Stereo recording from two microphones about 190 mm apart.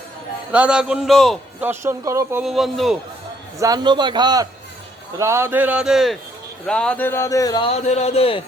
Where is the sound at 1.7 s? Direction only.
15° right (ahead or behind).